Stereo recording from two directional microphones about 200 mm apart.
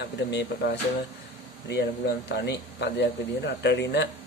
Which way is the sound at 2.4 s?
60° left (ahead or behind).